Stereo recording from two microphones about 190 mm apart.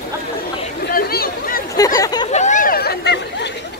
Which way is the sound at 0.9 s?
50° left (ahead or behind).